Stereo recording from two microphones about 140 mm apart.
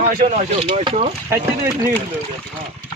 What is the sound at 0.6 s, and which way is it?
Speech, 45° right (ahead or behind).